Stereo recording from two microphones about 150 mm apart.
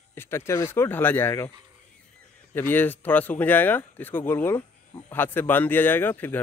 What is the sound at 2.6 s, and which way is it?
Speech, 15° left (ahead or behind).